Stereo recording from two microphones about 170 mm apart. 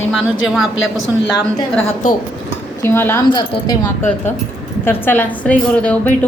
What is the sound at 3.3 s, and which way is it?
Speech, 25° left (ahead or behind).